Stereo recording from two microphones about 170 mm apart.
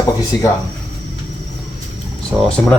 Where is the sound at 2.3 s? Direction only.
10° right (ahead or behind).